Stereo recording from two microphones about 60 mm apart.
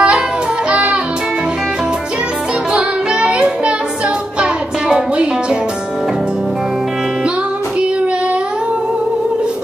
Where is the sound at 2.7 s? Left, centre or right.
Centre.